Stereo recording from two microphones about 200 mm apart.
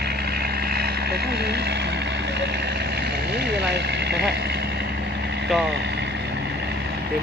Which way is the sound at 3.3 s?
55° right (ahead or behind).